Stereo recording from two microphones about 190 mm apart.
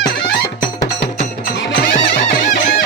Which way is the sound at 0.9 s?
65° left (ahead or behind).